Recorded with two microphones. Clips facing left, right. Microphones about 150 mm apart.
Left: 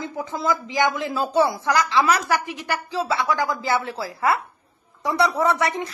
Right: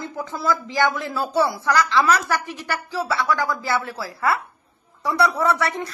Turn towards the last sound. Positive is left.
turn(degrees=20)  # may be behind; listen again after turning